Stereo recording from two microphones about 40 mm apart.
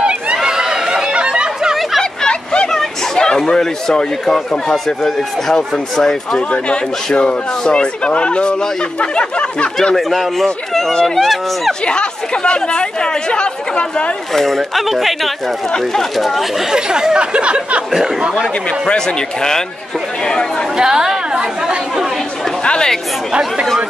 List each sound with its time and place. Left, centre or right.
0.0 s chatter: centre
2.2 s vehicle: left
2.7 s a sound: centre
3.3 s speech: centre
9.9 s speech: centre
11.8 s speech: left
14.3 s speech: centre
16.2 s speech: centre
16.7 s speech: centre
18.9 s speech: centre
20.7 s speech: centre
22.7 s speech: centre